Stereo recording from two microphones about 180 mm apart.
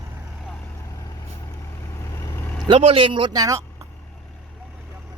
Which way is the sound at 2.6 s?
30° right (ahead or behind).